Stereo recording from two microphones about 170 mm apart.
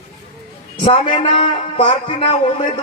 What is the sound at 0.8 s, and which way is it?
Speech, 30° left (ahead or behind).